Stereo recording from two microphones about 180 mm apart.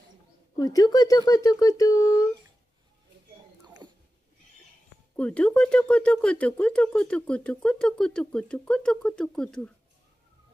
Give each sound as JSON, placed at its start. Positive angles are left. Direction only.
{"t": 0.6, "sound": "speech", "side_deg": 20}
{"t": 3.6, "sound": "a sound", "side_deg": -25}
{"t": 5.1, "sound": "speech", "side_deg": 5}